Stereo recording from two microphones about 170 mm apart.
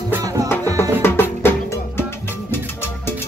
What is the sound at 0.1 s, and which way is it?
Music, 20° right (ahead or behind).